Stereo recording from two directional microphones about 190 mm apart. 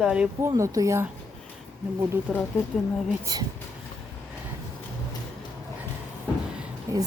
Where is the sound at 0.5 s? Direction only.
15° right (ahead or behind).